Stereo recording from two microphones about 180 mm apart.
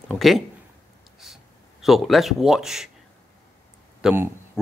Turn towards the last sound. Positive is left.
turn(degrees=-10)  # may be behind; listen again after turning